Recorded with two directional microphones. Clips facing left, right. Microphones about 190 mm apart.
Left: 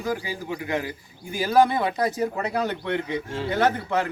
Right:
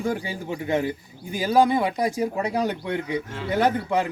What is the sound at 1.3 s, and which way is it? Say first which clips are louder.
A man's voice: even; 15° right (ahead or behind).